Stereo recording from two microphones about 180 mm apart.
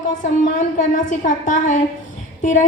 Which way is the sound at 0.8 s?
45° left (ahead or behind).